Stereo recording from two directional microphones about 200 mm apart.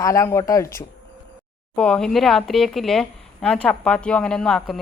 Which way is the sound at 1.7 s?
5° left (ahead or behind).